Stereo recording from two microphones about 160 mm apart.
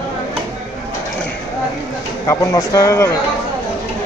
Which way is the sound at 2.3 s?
20° left (ahead or behind).